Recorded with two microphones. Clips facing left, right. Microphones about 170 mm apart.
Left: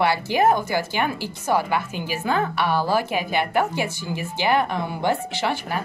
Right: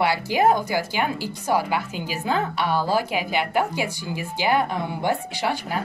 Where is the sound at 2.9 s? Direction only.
15° right (ahead or behind).